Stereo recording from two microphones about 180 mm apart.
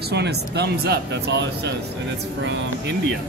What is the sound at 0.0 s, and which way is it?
A man's voice, 65° right (ahead or behind).